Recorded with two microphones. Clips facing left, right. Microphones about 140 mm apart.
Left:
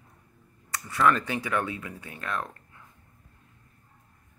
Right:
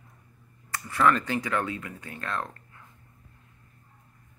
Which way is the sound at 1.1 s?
20° left (ahead or behind).